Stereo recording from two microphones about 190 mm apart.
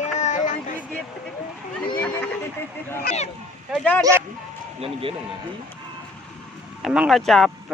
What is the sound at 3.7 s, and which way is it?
Bow-wow, 5° left (ahead or behind).